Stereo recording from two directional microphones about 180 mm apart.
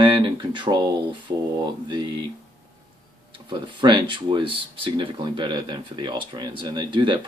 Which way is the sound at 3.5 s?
25° right (ahead or behind).